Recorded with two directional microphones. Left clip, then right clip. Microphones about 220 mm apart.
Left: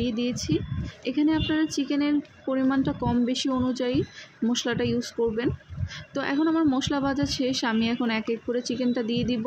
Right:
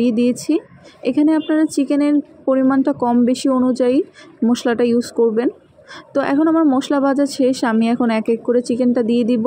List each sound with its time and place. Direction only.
0.0 s a woman's voice: 20° right (ahead or behind)